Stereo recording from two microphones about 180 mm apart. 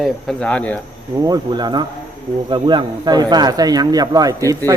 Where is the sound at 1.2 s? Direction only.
20° right (ahead or behind).